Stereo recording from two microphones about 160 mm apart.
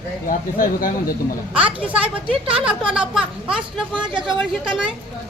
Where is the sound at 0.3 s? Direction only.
60° left (ahead or behind).